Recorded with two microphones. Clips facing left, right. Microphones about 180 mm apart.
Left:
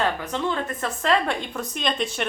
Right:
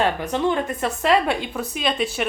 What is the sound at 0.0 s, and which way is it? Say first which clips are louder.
Speech: right 4 dB; 15° right (ahead or behind).